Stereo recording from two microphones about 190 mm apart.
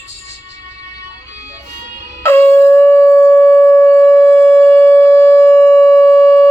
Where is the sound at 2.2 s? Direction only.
15° left (ahead or behind).